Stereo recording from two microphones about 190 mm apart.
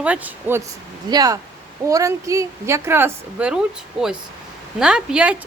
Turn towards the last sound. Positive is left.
turn(degrees=-5)  # may be behind; listen again after turning